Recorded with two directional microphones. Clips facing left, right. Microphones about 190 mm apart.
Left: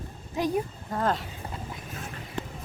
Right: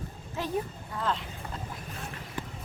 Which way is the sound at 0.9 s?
45° left (ahead or behind).